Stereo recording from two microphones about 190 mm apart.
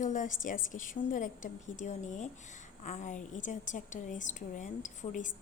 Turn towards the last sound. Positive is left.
turn(degrees=40)  # may be behind; listen again after turning